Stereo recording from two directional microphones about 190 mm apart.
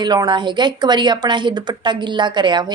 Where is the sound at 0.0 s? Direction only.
20° right (ahead or behind).